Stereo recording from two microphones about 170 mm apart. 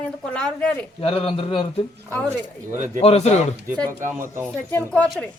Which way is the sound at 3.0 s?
35° left (ahead or behind).